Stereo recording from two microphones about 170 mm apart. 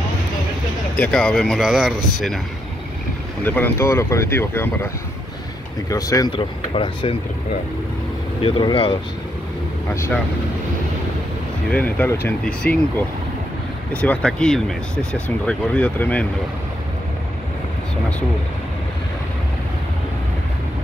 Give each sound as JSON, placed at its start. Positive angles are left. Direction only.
{"t": 0.9, "sound": "speech", "side_deg": 5}
{"t": 3.4, "sound": "speech", "side_deg": 10}
{"t": 5.9, "sound": "speech", "side_deg": 20}
{"t": 6.3, "sound": "speech", "side_deg": 30}
{"t": 8.4, "sound": "speech", "side_deg": 30}
{"t": 9.9, "sound": "speech", "side_deg": 15}
{"t": 11.7, "sound": "speech", "side_deg": 10}
{"t": 14.0, "sound": "speech", "side_deg": 5}